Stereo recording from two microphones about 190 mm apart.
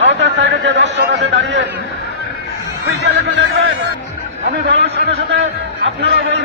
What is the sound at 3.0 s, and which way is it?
Speech, 60° right (ahead or behind).